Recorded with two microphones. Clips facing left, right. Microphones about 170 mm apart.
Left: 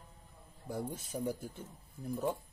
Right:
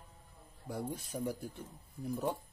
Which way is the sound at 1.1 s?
10° left (ahead or behind).